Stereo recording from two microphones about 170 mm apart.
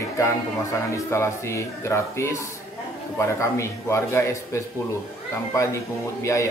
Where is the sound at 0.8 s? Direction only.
15° left (ahead or behind).